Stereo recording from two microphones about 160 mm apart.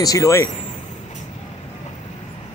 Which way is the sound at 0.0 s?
20° left (ahead or behind).